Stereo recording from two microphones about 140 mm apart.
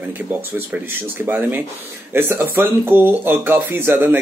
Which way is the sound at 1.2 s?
15° right (ahead or behind).